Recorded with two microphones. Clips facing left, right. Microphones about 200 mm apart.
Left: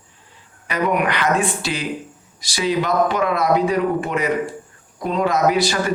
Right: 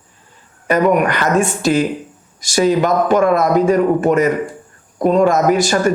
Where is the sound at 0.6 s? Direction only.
45° right (ahead or behind).